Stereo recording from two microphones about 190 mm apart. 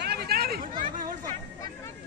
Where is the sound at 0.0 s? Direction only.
55° right (ahead or behind).